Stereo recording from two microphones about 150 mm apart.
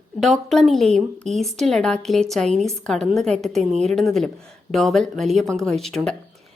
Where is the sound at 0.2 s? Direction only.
Centre (ahead or behind).